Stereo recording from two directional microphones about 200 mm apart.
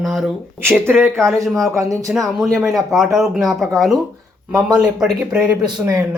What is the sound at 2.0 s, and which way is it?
Speech, centre (ahead or behind).